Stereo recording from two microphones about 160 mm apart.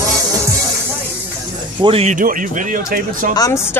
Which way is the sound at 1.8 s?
40° right (ahead or behind).